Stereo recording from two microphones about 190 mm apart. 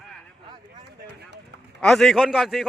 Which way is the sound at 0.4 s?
25° right (ahead or behind).